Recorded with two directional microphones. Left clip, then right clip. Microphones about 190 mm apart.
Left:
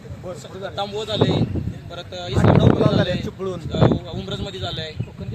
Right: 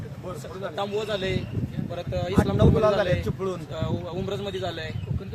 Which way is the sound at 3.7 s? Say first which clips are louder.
Left 10 dB; 5° right (ahead or behind).